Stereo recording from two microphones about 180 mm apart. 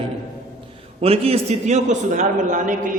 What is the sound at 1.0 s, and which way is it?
A man's voice, 35° right (ahead or behind).